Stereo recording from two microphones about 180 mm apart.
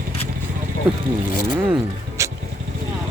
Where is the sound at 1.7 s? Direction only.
15° right (ahead or behind).